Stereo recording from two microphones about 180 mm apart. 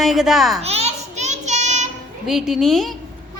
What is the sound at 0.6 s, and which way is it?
Child singing, 35° right (ahead or behind).